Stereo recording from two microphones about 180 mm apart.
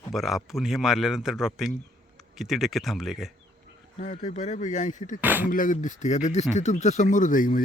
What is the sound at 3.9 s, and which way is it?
Speech, 45° left (ahead or behind).